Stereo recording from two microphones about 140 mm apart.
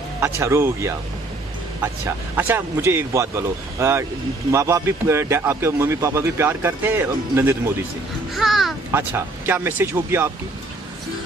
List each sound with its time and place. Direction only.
0.4 s a man's voice: 20° right (ahead or behind)
8.4 s a child's voice: centre (ahead or behind)
8.9 s speech: 15° right (ahead or behind)